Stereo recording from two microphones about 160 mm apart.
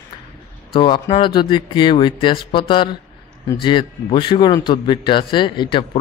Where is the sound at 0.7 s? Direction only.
30° left (ahead or behind).